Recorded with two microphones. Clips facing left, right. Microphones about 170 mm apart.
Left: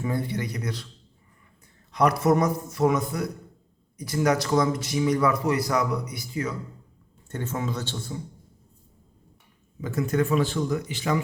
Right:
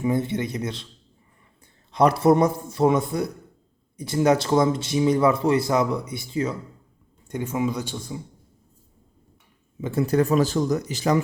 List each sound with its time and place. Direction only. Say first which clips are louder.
0.0 s a man's voice: right 5 dB; 20° right (ahead or behind)
1.9 s a man's voice: right 4 dB; 30° right (ahead or behind)
7.3 s speech: right 5 dB; 15° right (ahead or behind)
9.8 s speech: right 4 dB; 30° right (ahead or behind)